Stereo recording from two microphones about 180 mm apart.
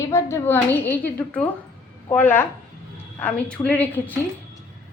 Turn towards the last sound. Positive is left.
turn(degrees=10)  # may be behind; listen again after turning